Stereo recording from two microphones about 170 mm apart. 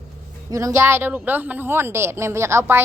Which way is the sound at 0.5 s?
20° right (ahead or behind).